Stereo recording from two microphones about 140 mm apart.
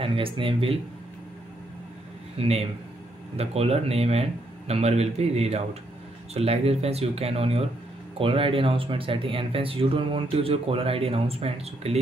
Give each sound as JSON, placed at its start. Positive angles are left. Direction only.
{"t": 0.0, "sound": "speech", "side_deg": -40}
{"t": 2.3, "sound": "speech", "side_deg": -45}